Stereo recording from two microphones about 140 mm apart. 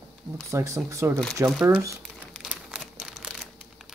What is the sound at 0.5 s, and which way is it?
Speech, 20° right (ahead or behind).